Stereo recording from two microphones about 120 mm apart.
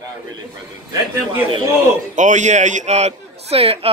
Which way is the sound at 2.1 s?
90° right.